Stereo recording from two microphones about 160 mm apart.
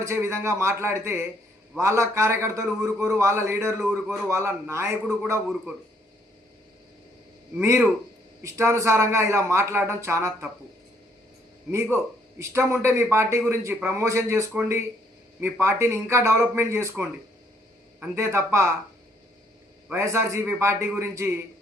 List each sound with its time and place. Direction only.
0.0 s a man's voice: 15° right (ahead or behind)
3.8 s a man's voice: 5° right (ahead or behind)
7.6 s a man's voice: 15° right (ahead or behind)
11.7 s a man's voice: 15° right (ahead or behind)
19.9 s a man's voice: 15° right (ahead or behind)